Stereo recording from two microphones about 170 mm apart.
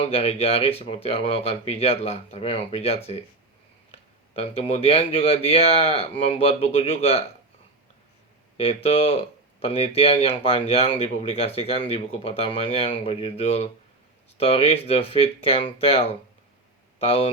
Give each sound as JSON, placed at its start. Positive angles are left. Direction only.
{"t": 0.0, "sound": "speech", "side_deg": 35}
{"t": 4.4, "sound": "speech", "side_deg": 35}
{"t": 8.5, "sound": "speech", "side_deg": 35}